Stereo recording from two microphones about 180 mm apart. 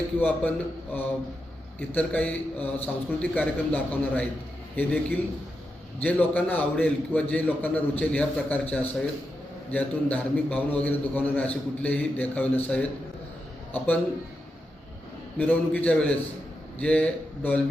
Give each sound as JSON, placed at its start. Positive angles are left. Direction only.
{"t": 0.2, "sound": "a man's voice", "side_deg": 10}
{"t": 1.9, "sound": "a man's voice", "side_deg": 10}
{"t": 15.4, "sound": "a man's voice", "side_deg": 10}